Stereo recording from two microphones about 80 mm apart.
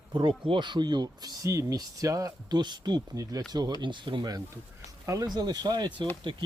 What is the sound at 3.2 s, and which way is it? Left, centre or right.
Speech, right.